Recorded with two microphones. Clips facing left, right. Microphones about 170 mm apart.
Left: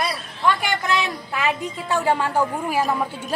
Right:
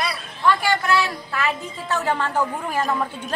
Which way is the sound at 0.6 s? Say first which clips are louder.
Right 2 dB; 20° left (ahead or behind).